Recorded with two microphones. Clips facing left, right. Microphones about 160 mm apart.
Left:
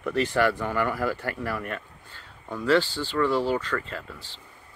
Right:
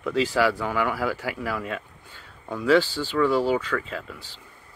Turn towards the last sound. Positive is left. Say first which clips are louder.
# right 2 dB
turn(degrees=-10)  # may be behind; listen again after turning